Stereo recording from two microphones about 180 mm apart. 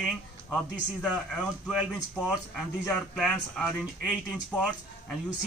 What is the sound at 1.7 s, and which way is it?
Speech, 10° right (ahead or behind).